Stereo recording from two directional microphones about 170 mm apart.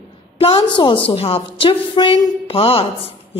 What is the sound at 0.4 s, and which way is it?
A woman's voice, 35° left (ahead or behind).